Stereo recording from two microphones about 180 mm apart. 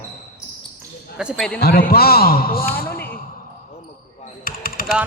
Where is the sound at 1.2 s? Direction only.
5° left (ahead or behind).